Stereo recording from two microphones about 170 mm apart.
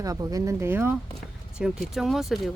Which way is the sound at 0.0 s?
20° right (ahead or behind).